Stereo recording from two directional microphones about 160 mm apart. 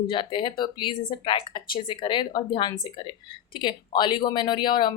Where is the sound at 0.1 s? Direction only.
30° left (ahead or behind).